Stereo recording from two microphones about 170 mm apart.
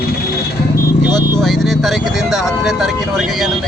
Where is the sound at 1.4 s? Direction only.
Centre (ahead or behind).